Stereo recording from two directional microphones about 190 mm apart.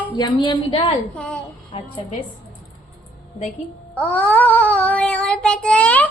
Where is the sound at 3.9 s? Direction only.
10° left (ahead or behind).